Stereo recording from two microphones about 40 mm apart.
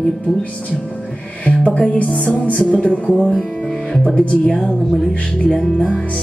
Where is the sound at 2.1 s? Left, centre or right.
Left.